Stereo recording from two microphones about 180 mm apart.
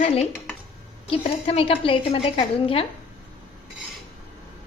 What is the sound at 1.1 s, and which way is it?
A woman's voice, 30° left (ahead or behind).